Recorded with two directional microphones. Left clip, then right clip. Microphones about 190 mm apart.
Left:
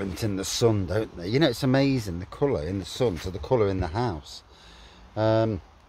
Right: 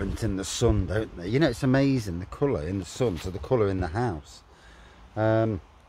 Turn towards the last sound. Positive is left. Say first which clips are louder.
# left 1 dB
turn(degrees=5)  # may be behind; listen again after turning